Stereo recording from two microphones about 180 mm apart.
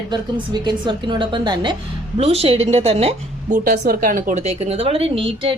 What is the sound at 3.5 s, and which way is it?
Speech, 55° right (ahead or behind).